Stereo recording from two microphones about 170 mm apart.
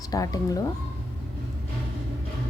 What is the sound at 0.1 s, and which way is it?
Speech, 20° left (ahead or behind).